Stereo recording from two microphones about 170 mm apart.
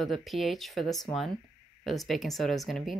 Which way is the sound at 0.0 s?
Centre (ahead or behind).